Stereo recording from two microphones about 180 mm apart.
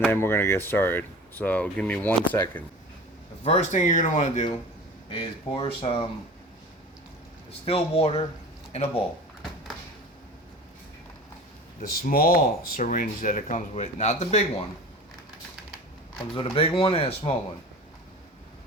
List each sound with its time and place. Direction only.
0.1 s speech: 10° left (ahead or behind)
3.4 s speech: 40° left (ahead or behind)
5.1 s speech: 30° left (ahead or behind)
7.6 s speech: 35° left (ahead or behind)
11.8 s speech: 50° left (ahead or behind)
16.3 s speech: 30° left (ahead or behind)